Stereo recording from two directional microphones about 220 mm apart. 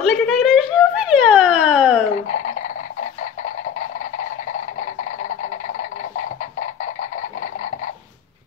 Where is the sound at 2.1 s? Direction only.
35° left (ahead or behind).